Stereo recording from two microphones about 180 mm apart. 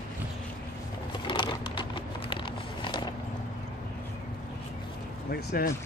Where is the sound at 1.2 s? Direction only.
25° left (ahead or behind).